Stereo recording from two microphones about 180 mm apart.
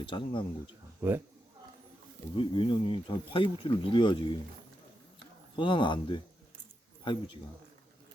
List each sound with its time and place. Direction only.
0.0 s speech: 30° left (ahead or behind)
1.0 s speech: 10° right (ahead or behind)
2.3 s speech: 30° left (ahead or behind)
5.5 s speech: 25° left (ahead or behind)